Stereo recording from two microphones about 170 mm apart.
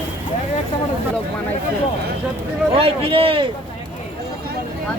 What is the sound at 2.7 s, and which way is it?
Speech, 35° right (ahead or behind).